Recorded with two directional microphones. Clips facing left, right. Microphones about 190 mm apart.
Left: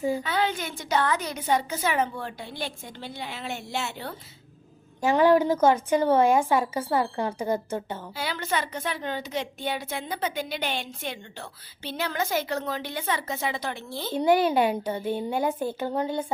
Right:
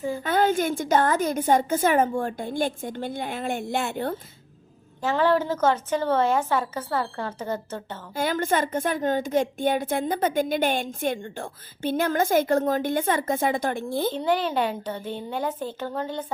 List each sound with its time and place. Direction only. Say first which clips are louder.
0.2 s a woman's voice: right 6 dB; 50° right (ahead or behind)
4.9 s a woman's voice: left 2 dB; 15° left (ahead or behind)
8.1 s a woman's voice: right 7 dB; 50° right (ahead or behind)
14.1 s a woman's voice: left 8 dB; 10° left (ahead or behind)